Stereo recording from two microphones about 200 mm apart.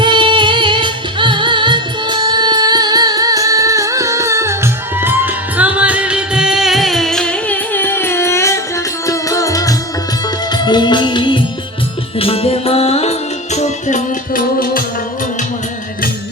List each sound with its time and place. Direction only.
0.0 s music: 25° right (ahead or behind); by 14.8 s 45° left (ahead or behind)